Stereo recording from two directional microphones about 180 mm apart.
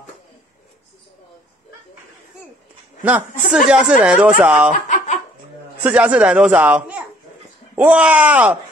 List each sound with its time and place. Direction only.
3.0 s a woman's voice: 10° right (ahead or behind)
4.7 s snicker: 45° left (ahead or behind)
5.8 s speech: 10° right (ahead or behind)